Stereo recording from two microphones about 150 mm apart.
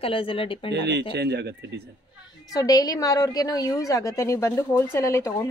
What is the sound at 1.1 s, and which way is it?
Speech, 90° right.